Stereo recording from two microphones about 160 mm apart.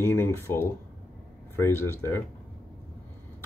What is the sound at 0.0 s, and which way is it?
Speech, 15° left (ahead or behind).